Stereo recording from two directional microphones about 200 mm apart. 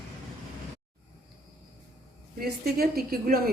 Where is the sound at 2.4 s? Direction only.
50° right (ahead or behind).